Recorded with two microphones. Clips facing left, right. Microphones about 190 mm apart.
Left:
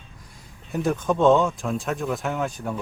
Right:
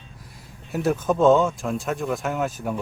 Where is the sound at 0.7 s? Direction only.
5° right (ahead or behind).